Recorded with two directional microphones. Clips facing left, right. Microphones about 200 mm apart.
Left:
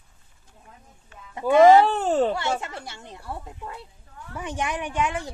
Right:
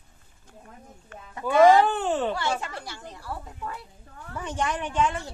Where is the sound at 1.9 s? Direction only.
40° left (ahead or behind).